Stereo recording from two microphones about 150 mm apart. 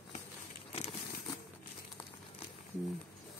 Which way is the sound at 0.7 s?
40° left (ahead or behind).